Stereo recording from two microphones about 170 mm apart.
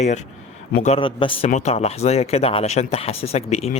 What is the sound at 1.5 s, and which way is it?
Speech, 40° left (ahead or behind).